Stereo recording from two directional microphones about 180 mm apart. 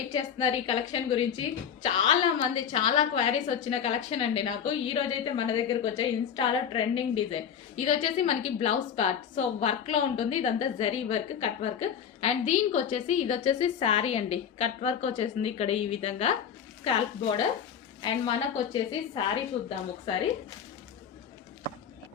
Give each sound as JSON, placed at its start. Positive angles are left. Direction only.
{"t": 0.1, "sound": "a woman's voice", "side_deg": 25}